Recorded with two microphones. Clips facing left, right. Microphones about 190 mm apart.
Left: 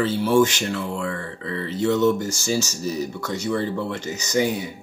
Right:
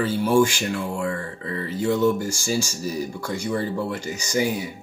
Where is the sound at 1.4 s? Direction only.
40° right (ahead or behind).